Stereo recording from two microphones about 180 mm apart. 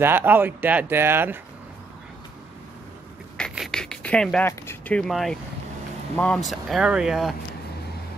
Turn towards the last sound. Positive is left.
turn(degrees=0)  # may be behind; listen again after turning